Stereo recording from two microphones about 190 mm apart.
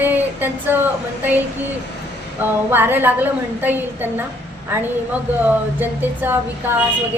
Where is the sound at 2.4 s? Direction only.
10° right (ahead or behind).